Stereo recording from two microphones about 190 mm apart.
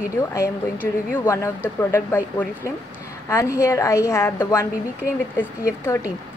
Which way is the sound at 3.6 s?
15° left (ahead or behind).